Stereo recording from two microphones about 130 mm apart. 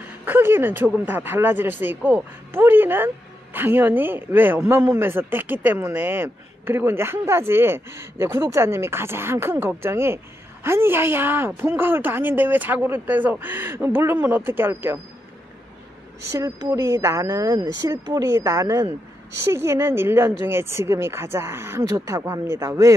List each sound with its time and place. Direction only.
0.0 s a woman's voice: 15° right (ahead or behind)
16.3 s speech: 25° right (ahead or behind)